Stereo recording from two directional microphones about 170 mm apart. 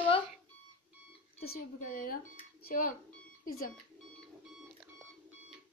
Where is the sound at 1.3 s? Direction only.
65° left (ahead or behind).